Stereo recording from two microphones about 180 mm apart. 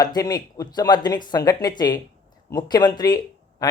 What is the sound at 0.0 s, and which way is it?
Speech, 20° left (ahead or behind).